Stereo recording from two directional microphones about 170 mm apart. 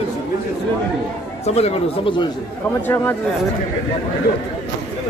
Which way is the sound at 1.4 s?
40° left (ahead or behind).